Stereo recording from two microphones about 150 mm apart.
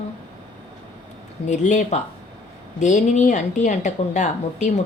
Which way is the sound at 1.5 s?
55° left (ahead or behind).